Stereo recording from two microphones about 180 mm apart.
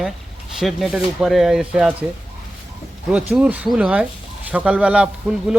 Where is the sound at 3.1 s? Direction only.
5° right (ahead or behind).